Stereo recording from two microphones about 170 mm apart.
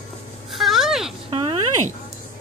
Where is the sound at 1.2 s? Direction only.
30° right (ahead or behind).